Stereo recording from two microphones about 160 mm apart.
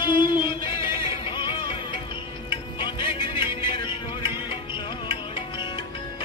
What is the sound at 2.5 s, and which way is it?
Music, 30° left (ahead or behind).